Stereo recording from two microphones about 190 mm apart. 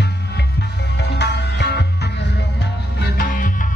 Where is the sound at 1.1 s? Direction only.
60° left (ahead or behind).